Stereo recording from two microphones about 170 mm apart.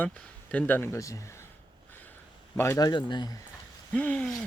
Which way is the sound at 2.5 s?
15° left (ahead or behind).